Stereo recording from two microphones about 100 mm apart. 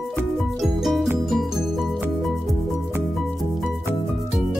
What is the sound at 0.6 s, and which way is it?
Music, centre (ahead or behind).